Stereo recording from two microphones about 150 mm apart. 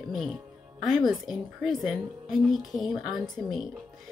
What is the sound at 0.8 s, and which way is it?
Speech, centre (ahead or behind).